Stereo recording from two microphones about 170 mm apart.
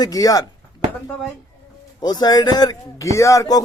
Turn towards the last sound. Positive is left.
turn(degrees=20)  # may be behind; listen again after turning